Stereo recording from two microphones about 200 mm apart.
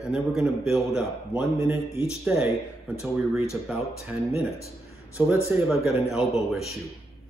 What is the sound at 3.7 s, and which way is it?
Speech, 5° right (ahead or behind).